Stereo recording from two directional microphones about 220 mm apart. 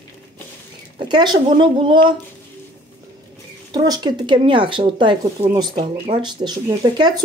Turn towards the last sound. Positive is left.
turn(degrees=-20)  # may be behind; listen again after turning